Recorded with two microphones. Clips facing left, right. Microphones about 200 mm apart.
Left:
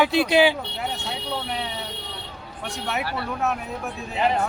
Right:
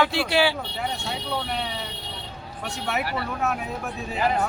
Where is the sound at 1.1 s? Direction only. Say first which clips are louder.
Even; centre (ahead or behind).